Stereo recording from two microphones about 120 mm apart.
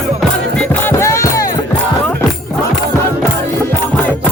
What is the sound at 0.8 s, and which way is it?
Music, 20° left (ahead or behind).